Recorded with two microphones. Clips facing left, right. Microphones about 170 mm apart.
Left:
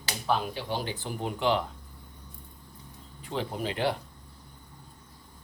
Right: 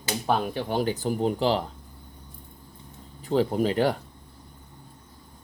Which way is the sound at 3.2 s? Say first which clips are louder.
Right 9 dB; 40° right (ahead or behind).